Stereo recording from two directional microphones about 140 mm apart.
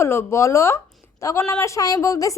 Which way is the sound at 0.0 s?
20° left (ahead or behind).